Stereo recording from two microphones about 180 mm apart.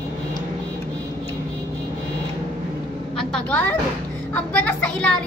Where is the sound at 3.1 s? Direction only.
5° left (ahead or behind).